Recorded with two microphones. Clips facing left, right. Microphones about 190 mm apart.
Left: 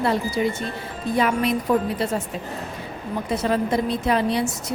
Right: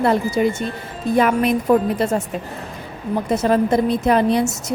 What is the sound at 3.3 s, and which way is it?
A woman's voice, 45° right (ahead or behind).